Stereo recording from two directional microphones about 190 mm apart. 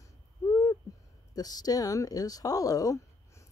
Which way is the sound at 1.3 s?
20° left (ahead or behind).